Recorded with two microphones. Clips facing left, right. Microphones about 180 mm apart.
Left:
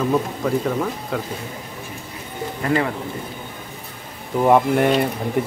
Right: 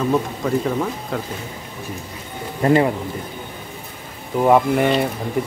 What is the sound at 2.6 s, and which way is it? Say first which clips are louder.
Speech: right 6 dB; 30° right (ahead or behind).